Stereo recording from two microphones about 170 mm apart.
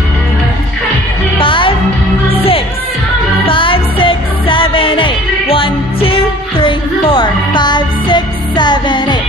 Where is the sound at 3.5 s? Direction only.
30° left (ahead or behind).